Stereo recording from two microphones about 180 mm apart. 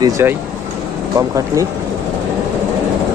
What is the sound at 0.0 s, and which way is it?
Speech, 15° right (ahead or behind).